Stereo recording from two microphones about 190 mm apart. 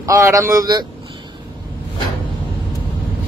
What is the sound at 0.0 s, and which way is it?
Speech, 15° right (ahead or behind).